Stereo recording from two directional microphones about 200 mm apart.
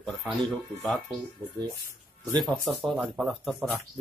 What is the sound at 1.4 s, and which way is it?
Speech, 20° right (ahead or behind).